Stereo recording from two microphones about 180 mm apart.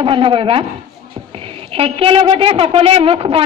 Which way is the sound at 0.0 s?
30° right (ahead or behind).